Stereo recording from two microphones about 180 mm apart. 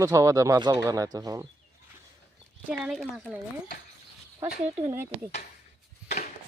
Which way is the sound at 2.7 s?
Centre (ahead or behind).